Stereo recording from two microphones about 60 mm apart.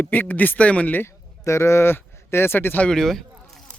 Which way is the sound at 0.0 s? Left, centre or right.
Left.